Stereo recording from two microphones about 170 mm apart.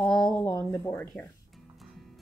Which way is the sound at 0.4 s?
20° left (ahead or behind).